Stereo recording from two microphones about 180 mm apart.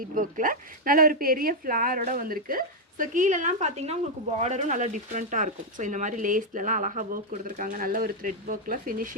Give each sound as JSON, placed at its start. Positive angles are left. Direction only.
{"t": 0.0, "sound": "speech", "side_deg": -50}